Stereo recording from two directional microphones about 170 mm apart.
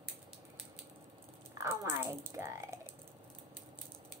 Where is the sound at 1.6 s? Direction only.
15° right (ahead or behind).